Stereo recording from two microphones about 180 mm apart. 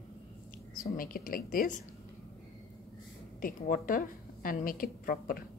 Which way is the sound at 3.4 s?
50° left (ahead or behind).